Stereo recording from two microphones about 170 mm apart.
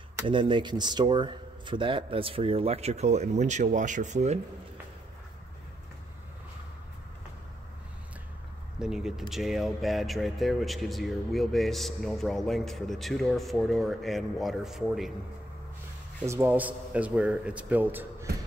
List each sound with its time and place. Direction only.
0.3 s speech: 30° right (ahead or behind)
8.7 s speech: 5° right (ahead or behind)
16.3 s a man's voice: 15° right (ahead or behind)